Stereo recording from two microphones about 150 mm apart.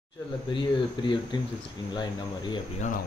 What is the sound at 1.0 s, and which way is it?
Speech, 30° left (ahead or behind).